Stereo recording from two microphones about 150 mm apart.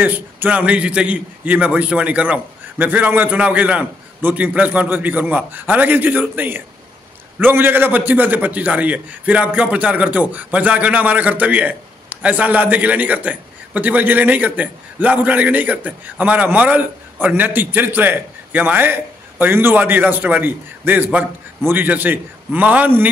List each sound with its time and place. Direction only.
0.0 s a man's voice: 10° right (ahead or behind)